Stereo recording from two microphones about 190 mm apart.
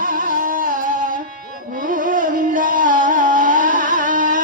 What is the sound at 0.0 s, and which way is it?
Music, 45° right (ahead or behind).